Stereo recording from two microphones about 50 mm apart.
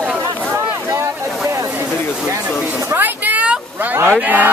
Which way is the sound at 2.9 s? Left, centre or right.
Right.